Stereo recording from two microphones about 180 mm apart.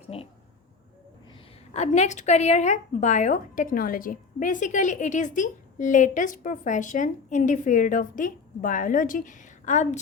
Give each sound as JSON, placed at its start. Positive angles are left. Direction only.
{"t": 0.1, "sound": "a woman's voice", "side_deg": 35}
{"t": 1.3, "sound": "a woman's voice", "side_deg": 35}